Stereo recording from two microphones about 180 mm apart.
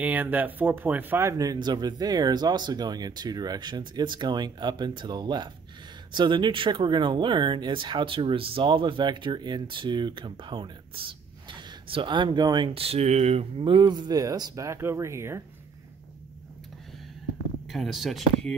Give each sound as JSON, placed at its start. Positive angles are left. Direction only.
{"t": 0.0, "sound": "speech", "side_deg": -10}
{"t": 17.6, "sound": "speech", "side_deg": 0}